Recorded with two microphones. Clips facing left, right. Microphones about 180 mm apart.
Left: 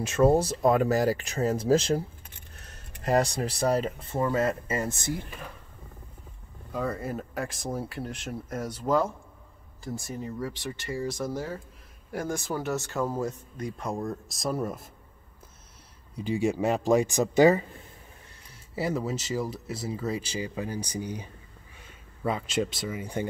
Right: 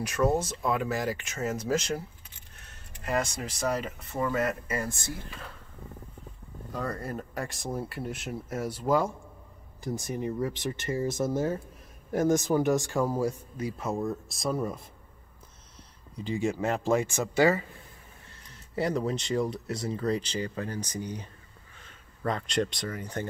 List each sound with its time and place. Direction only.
0.0 s speech: 25° left (ahead or behind)
6.7 s speech: 5° left (ahead or behind)
16.2 s speech: 15° left (ahead or behind)
18.5 s speech: 5° left (ahead or behind)